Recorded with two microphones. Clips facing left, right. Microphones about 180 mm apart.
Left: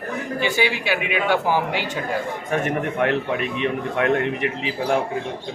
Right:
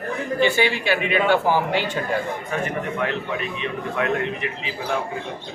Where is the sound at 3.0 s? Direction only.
60° left (ahead or behind).